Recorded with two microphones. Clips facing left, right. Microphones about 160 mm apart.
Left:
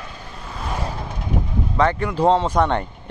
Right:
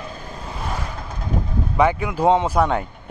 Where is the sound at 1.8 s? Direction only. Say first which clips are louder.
Right 1 dB; 10° right (ahead or behind).